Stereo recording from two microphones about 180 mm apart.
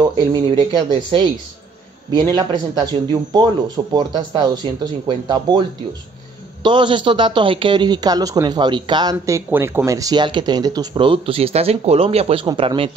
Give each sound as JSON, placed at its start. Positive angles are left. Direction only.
{"t": 0.0, "sound": "a man's voice", "side_deg": -25}